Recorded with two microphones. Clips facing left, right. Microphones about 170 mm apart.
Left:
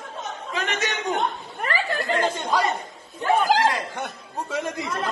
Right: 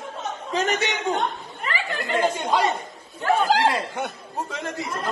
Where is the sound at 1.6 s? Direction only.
40° left (ahead or behind).